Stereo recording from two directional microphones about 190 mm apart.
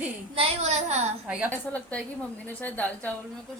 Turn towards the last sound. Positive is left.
turn(degrees=10)  # may be behind; listen again after turning